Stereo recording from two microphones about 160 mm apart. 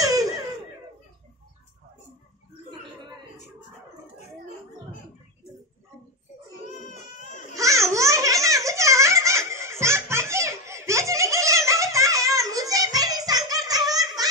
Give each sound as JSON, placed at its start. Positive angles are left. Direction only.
{"t": 0.0, "sound": "laughter", "side_deg": -20}
{"t": 6.9, "sound": "baby cry", "side_deg": 50}
{"t": 7.5, "sound": "a sound", "side_deg": -20}
{"t": 14.0, "sound": "giggle", "side_deg": -25}